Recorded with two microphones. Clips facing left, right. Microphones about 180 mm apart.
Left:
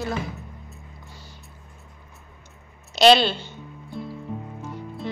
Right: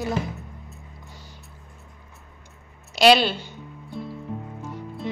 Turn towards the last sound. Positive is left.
turn(degrees=0)  # may be behind; listen again after turning